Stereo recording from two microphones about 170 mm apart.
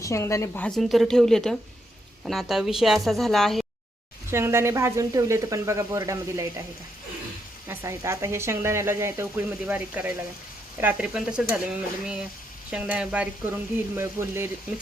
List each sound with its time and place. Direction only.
0.0 s a woman's voice: 15° left (ahead or behind); by 3.7 s centre (ahead or behind)
4.3 s speech: 15° right (ahead or behind)
7.7 s speech: 15° right (ahead or behind)
12.7 s speech: 5° right (ahead or behind)